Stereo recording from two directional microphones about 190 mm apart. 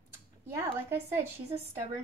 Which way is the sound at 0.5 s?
10° right (ahead or behind).